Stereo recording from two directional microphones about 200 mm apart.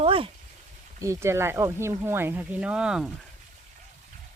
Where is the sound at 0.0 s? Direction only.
30° right (ahead or behind).